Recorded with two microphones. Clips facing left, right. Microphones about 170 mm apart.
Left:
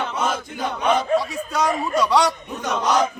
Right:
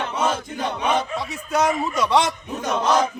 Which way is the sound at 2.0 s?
20° right (ahead or behind).